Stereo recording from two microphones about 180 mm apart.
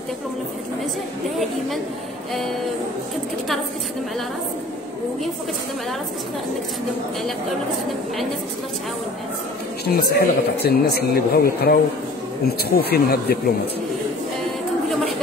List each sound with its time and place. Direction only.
9.8 s speech: 60° left (ahead or behind)